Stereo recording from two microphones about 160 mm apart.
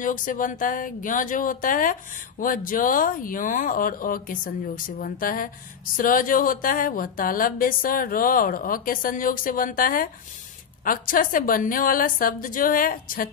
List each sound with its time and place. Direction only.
0.0 s a woman's voice: 55° left (ahead or behind)